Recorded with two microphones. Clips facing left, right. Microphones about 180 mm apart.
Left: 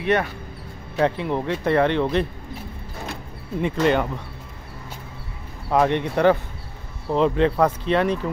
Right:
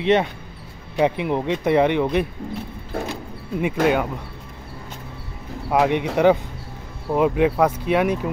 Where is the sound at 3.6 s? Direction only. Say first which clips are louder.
Right 1 dB; 5° right (ahead or behind).